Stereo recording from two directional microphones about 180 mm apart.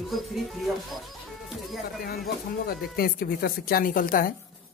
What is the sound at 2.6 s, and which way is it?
A woman's voice, 55° left (ahead or behind).